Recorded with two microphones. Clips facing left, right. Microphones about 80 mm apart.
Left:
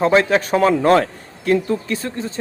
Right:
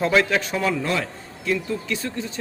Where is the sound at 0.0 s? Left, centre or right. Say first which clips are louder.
Left 5 dB; left.